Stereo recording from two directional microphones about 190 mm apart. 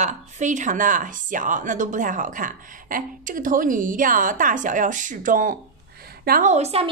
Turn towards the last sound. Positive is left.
turn(degrees=-35)  # may be behind; listen again after turning